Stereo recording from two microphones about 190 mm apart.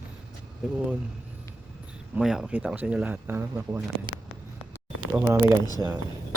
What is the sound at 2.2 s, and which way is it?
Speech, 5° right (ahead or behind).